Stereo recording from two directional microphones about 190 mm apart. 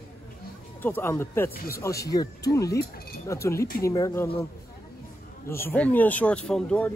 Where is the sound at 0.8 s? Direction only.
10° left (ahead or behind).